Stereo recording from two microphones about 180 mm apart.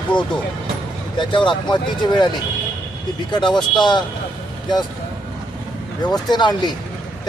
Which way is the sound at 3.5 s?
25° left (ahead or behind).